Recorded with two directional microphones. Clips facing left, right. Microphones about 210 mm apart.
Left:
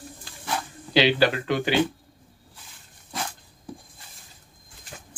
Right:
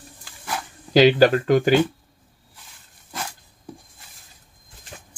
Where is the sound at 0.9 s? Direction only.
45° right (ahead or behind).